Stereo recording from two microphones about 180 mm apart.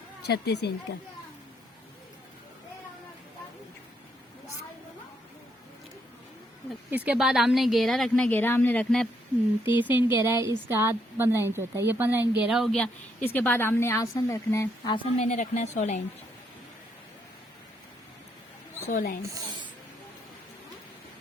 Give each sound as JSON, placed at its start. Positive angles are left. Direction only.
{"t": 0.2, "sound": "speech", "side_deg": 65}
{"t": 6.7, "sound": "a woman's voice", "side_deg": -10}
{"t": 9.6, "sound": "a woman's voice", "side_deg": -10}
{"t": 14.9, "sound": "a woman's voice", "side_deg": 35}
{"t": 18.9, "sound": "a woman's voice", "side_deg": 50}